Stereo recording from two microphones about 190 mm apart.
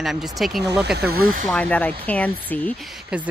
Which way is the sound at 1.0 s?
55° right (ahead or behind).